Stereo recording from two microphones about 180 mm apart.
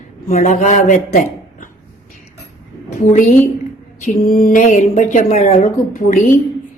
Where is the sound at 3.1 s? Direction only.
40° left (ahead or behind).